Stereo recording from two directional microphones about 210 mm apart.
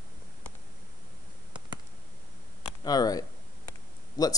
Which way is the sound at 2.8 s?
20° left (ahead or behind).